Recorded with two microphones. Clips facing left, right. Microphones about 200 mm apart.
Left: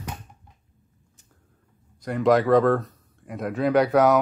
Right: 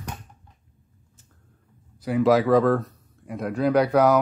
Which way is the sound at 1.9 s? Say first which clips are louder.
Right 1 dB; 5° right (ahead or behind).